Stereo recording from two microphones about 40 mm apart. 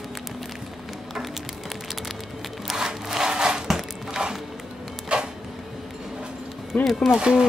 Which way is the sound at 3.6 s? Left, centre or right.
Centre.